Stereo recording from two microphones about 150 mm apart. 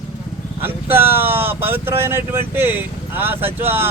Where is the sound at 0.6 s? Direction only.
15° right (ahead or behind).